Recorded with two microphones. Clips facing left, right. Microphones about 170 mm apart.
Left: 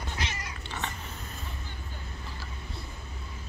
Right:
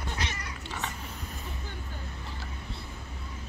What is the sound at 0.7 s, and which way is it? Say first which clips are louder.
Cat: even; 5° right (ahead or behind).